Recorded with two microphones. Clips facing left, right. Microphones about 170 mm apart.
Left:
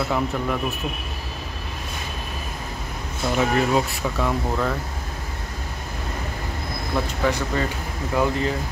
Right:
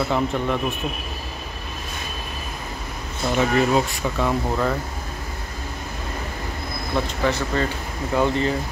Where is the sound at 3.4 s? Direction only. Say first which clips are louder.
Right 2 dB; centre (ahead or behind).